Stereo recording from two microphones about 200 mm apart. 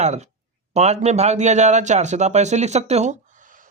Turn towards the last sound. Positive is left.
turn(degrees=-40)  # may be behind; listen again after turning